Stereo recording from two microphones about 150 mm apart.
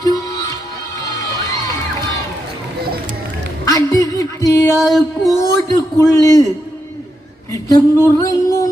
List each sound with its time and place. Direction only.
0.0 s music: 25° left (ahead or behind)
3.7 s music: 25° left (ahead or behind)
4.8 s music: centre (ahead or behind)
5.4 s a man's voice: 20° left (ahead or behind)
7.7 s a man's voice: 20° left (ahead or behind)